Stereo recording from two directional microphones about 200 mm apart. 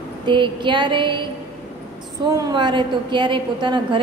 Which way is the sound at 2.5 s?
25° right (ahead or behind).